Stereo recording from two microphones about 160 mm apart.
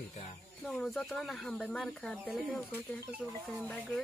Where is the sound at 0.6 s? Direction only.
5° left (ahead or behind).